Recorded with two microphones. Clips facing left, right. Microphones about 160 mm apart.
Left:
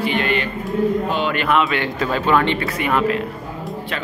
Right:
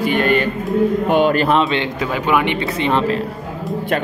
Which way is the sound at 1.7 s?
20° right (ahead or behind).